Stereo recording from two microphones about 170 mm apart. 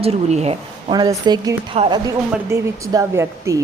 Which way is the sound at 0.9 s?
25° right (ahead or behind).